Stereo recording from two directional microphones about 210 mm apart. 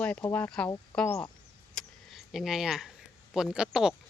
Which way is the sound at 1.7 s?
Centre (ahead or behind).